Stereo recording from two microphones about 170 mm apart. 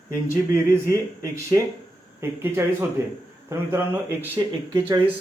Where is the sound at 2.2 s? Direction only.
15° right (ahead or behind).